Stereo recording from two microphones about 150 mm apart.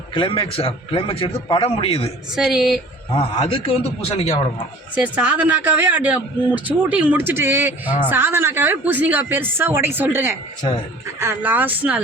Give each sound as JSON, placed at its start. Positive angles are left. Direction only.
{"t": 0.1, "sound": "a man's voice", "side_deg": 35}
{"t": 2.3, "sound": "speech", "side_deg": -5}
{"t": 3.2, "sound": "a man's voice", "side_deg": 35}
{"t": 4.9, "sound": "a man's voice", "side_deg": -10}
{"t": 10.6, "sound": "speech", "side_deg": 30}
{"t": 11.2, "sound": "a man's voice", "side_deg": -15}